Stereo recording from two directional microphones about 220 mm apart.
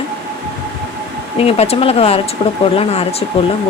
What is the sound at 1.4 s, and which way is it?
Speech, 25° left (ahead or behind).